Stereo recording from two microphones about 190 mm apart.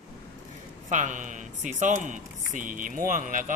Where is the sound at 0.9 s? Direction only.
40° right (ahead or behind).